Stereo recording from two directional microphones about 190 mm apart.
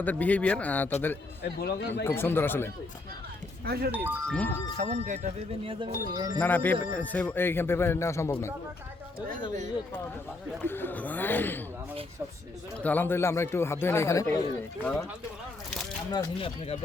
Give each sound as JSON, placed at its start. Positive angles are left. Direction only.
{"t": 0.0, "sound": "speech", "side_deg": 10}
{"t": 1.4, "sound": "speech", "side_deg": 65}
{"t": 2.0, "sound": "speech", "side_deg": 10}
{"t": 3.7, "sound": "speech", "side_deg": -55}
{"t": 3.9, "sound": "speech", "side_deg": -10}
{"t": 4.8, "sound": "speech", "side_deg": -40}
{"t": 5.6, "sound": "speech", "side_deg": -25}
{"t": 6.4, "sound": "speech", "side_deg": 10}
{"t": 10.6, "sound": "speech", "side_deg": 10}
{"t": 12.8, "sound": "speech", "side_deg": 10}
{"t": 16.1, "sound": "speech", "side_deg": 20}